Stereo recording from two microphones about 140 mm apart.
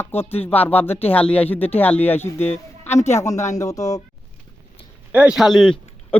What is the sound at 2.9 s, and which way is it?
Speech, 55° left (ahead or behind).